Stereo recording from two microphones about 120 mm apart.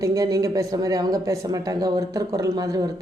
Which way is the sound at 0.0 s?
30° right (ahead or behind).